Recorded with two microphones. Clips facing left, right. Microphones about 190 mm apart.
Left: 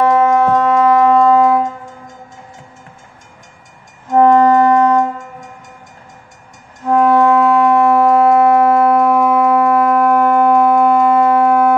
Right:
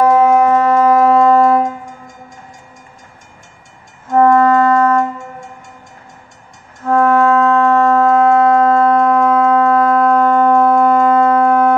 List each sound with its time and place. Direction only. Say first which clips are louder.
0.0 s civil defense siren: right 2 dB; 10° right (ahead or behind)
4.1 s music: left 1 dB; 20° left (ahead or behind)
6.8 s music: left 1 dB; 15° left (ahead or behind)